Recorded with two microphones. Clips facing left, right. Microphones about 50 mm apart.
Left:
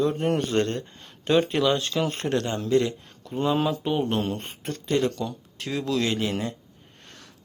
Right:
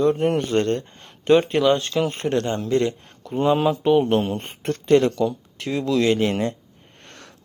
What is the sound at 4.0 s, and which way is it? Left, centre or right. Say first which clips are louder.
Speech: right 6 dB; right.